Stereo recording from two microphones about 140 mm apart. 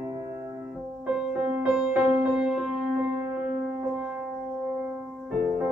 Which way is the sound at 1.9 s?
5° right (ahead or behind).